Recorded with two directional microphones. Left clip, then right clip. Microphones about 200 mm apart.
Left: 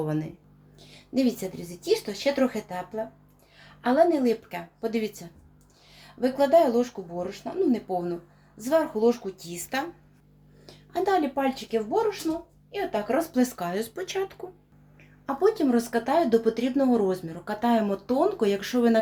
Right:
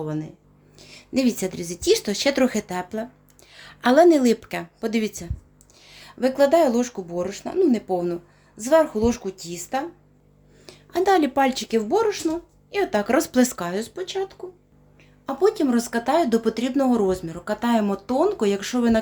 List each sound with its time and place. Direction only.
0.0 s speech: 10° left (ahead or behind)
0.8 s a woman's voice: 35° right (ahead or behind)
1.8 s speech: 60° right (ahead or behind); by 9.8 s 30° right (ahead or behind)
10.7 s a sound: 30° right (ahead or behind)
11.3 s speech: 60° right (ahead or behind)
13.6 s speech: 20° right (ahead or behind)
15.3 s speech: 20° right (ahead or behind)